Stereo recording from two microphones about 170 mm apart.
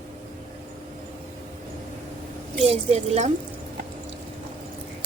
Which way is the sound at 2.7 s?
40° right (ahead or behind).